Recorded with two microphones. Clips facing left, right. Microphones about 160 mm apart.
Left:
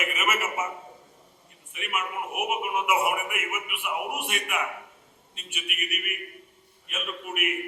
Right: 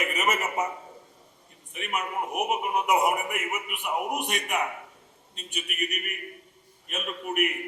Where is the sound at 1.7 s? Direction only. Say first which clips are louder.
Right 1 dB; 40° right (ahead or behind).